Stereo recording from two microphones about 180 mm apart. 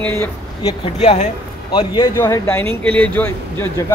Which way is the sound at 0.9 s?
40° left (ahead or behind).